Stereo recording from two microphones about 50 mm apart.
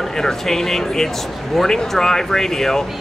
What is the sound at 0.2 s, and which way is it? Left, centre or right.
Speech, centre.